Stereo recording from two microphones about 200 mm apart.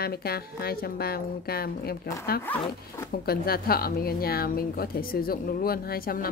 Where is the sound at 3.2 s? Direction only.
50° left (ahead or behind).